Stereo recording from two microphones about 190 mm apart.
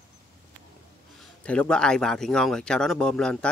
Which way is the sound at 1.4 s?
5° left (ahead or behind).